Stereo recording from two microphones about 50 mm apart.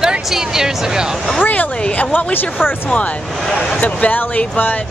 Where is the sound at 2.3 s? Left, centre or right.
Left.